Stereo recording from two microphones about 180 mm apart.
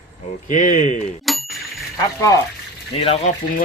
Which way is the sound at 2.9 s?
35° left (ahead or behind).